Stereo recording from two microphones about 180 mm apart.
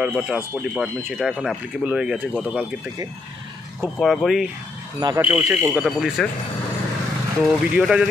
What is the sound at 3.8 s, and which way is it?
Speech, 5° left (ahead or behind).